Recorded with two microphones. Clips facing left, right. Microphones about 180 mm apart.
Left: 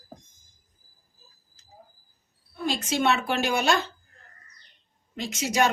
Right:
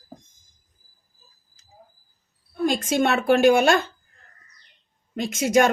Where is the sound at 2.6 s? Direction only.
50° right (ahead or behind).